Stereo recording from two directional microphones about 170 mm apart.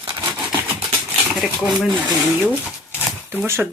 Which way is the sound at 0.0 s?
20° right (ahead or behind).